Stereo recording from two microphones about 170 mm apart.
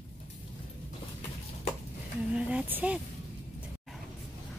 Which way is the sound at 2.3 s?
5° right (ahead or behind).